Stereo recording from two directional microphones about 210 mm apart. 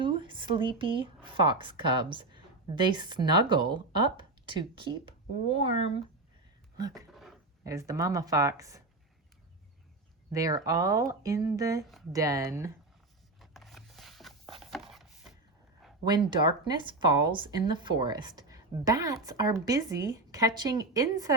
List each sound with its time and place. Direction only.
0.0 s speech: 25° right (ahead or behind)
6.7 s speech: 20° right (ahead or behind)
7.1 s a sound: centre (ahead or behind)
7.6 s speech: 15° right (ahead or behind)
10.3 s speech: 15° right (ahead or behind)
11.8 s speech: centre (ahead or behind)
12.1 s speech: 15° right (ahead or behind)
13.4 s zipper: centre (ahead or behind)
14.6 s chopping: centre (ahead or behind)
16.3 s speech: 20° right (ahead or behind)